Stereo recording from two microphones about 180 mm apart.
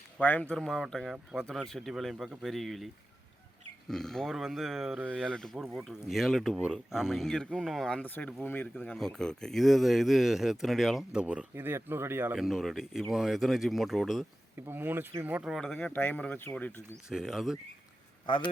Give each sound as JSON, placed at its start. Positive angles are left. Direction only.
{"t": 0.2, "sound": "speech", "side_deg": 10}
{"t": 12.4, "sound": "speech", "side_deg": 0}
{"t": 14.7, "sound": "speech", "side_deg": -10}
{"t": 15.5, "sound": "speech", "side_deg": 5}
{"t": 17.1, "sound": "speech", "side_deg": 0}
{"t": 18.3, "sound": "a man's voice", "side_deg": 25}